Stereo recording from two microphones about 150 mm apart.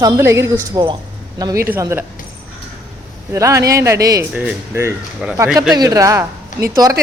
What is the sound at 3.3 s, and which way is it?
Speech, 20° right (ahead or behind).